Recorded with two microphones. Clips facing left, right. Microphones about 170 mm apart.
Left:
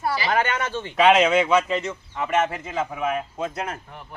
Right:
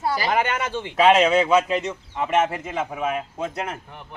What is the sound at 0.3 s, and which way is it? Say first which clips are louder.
Speech: left 1 dB; 10° right (ahead or behind).